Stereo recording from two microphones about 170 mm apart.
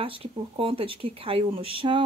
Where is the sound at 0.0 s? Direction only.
30° right (ahead or behind).